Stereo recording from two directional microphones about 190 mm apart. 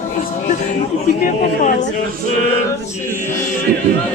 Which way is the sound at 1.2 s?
40° left (ahead or behind).